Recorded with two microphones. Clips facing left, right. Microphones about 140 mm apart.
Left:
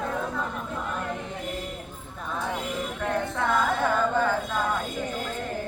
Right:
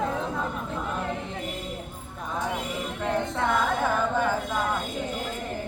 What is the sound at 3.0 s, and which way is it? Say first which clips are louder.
Music: right 1 dB; 20° right (ahead or behind).